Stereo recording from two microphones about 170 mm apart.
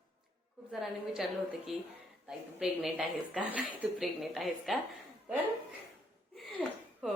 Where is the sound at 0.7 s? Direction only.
Centre (ahead or behind).